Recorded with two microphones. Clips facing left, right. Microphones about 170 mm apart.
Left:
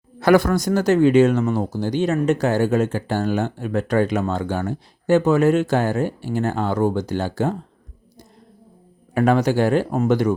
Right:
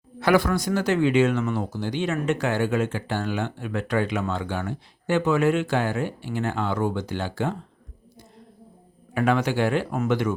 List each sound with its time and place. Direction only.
0.2 s speech: 45° left (ahead or behind)
9.1 s speech: 40° left (ahead or behind)